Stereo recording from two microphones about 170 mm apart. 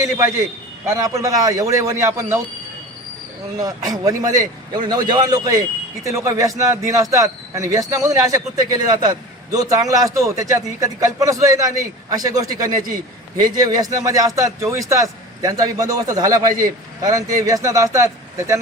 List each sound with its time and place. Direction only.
0.9 s a man's voice: 20° right (ahead or behind)
3.9 s a man's voice: 20° right (ahead or behind)